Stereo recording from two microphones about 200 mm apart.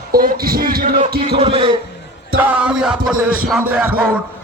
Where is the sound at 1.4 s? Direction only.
25° right (ahead or behind).